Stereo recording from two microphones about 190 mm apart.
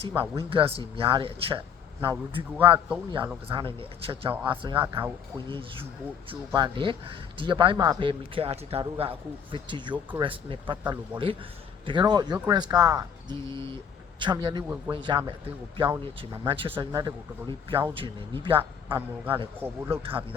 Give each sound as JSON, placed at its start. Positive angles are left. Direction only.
{"t": 0.2, "sound": "speech", "side_deg": -30}
{"t": 15.7, "sound": "speech", "side_deg": -25}
{"t": 18.9, "sound": "a man's voice", "side_deg": -10}
{"t": 20.0, "sound": "speech", "side_deg": -30}